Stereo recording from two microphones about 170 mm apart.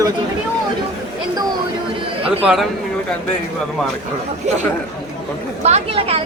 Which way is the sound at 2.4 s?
5° right (ahead or behind).